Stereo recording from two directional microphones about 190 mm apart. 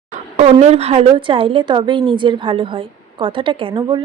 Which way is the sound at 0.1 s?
35° right (ahead or behind).